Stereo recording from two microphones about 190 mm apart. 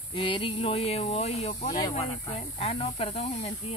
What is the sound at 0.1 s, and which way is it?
Speech, 25° left (ahead or behind).